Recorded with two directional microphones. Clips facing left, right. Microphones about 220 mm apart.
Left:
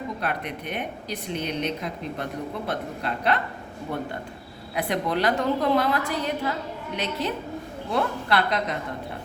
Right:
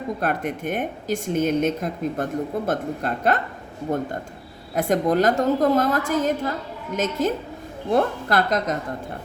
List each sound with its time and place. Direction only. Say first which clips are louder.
0.2 s speech: right 5 dB; 50° right (ahead or behind)